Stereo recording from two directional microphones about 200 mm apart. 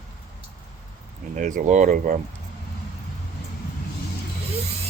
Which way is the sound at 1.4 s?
40° right (ahead or behind).